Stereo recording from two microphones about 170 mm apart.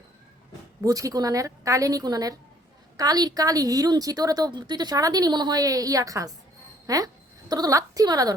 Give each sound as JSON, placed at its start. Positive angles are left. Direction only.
{"t": 0.8, "sound": "a woman's voice", "side_deg": -20}